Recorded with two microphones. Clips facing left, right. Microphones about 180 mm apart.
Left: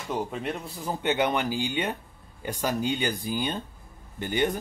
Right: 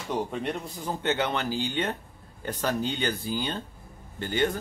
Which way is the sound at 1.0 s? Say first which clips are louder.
Left 3 dB; 15° left (ahead or behind).